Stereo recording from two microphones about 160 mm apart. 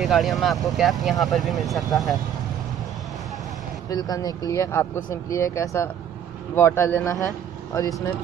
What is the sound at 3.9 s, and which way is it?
Speech, 25° left (ahead or behind).